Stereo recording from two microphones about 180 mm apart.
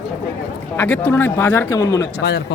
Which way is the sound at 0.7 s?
10° left (ahead or behind).